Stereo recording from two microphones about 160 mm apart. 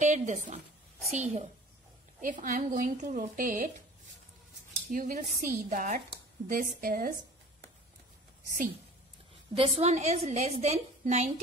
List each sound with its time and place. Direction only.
0.0 s a woman's voice: 50° right (ahead or behind)
4.9 s a woman's voice: 55° right (ahead or behind)
9.5 s a woman's voice: 35° right (ahead or behind)